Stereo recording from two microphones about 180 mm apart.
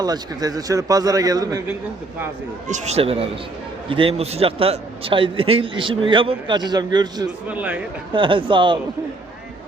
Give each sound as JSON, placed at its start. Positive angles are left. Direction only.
{"t": 0.0, "sound": "a man's voice", "side_deg": -20}
{"t": 2.6, "sound": "a man's voice", "side_deg": -40}
{"t": 7.4, "sound": "speech", "side_deg": -10}
{"t": 8.1, "sound": "a man's voice", "side_deg": -30}